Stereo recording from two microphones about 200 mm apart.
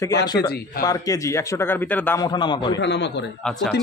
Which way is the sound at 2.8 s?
60° left (ahead or behind).